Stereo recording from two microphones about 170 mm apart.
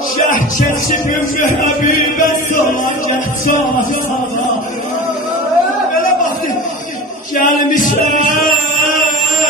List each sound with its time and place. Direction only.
1.4 s music: 50° left (ahead or behind)
7.3 s chant: 50° left (ahead or behind)